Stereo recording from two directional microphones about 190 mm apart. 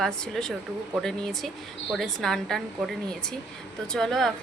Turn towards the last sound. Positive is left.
turn(degrees=0)  # may be behind; listen again after turning